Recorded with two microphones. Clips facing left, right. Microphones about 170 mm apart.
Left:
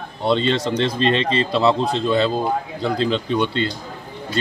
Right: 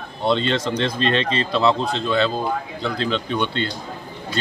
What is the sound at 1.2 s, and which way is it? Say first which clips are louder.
A man's voice: left 2 dB; 35° left (ahead or behind).